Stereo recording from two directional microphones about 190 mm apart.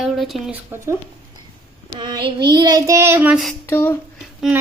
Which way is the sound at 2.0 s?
25° right (ahead or behind).